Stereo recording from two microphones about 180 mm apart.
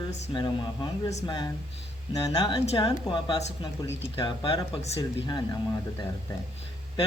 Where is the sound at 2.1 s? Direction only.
20° left (ahead or behind).